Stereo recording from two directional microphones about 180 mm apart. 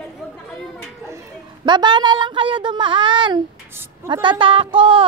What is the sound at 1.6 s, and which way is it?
Speech, 25° right (ahead or behind).